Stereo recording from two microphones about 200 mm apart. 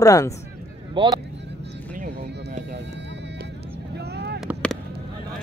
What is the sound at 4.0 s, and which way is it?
Vehicle, 55° right (ahead or behind).